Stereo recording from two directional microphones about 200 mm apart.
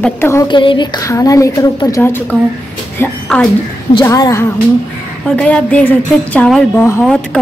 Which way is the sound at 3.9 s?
20° left (ahead or behind).